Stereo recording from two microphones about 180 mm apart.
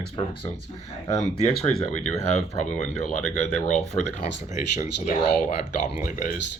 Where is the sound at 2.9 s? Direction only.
40° left (ahead or behind).